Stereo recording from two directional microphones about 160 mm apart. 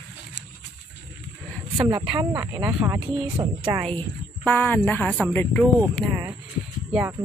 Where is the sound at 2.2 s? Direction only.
15° right (ahead or behind).